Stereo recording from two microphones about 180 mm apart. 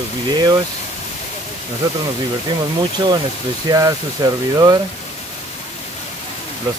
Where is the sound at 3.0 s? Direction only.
20° right (ahead or behind).